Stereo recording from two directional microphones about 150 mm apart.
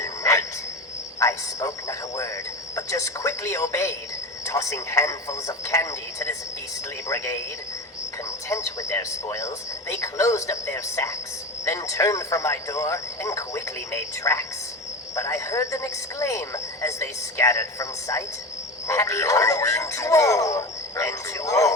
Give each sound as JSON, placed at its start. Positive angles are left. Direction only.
{"t": 0.0, "sound": "cricket", "side_deg": 20}
{"t": 1.2, "sound": "a sound", "side_deg": 20}
{"t": 4.4, "sound": "speech", "side_deg": 20}
{"t": 8.4, "sound": "speech", "side_deg": 20}